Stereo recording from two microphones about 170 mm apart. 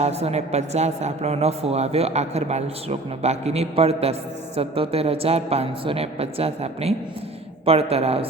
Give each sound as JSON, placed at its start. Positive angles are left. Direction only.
{"t": 0.0, "sound": "speech", "side_deg": -40}